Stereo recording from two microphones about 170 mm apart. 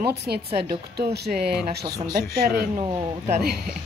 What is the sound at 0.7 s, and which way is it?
Speech, 70° right (ahead or behind).